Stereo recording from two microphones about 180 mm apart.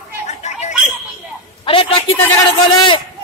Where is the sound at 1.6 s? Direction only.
30° left (ahead or behind).